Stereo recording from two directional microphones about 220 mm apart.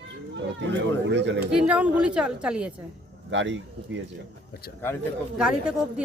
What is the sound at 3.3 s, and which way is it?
Speech, 60° right (ahead or behind).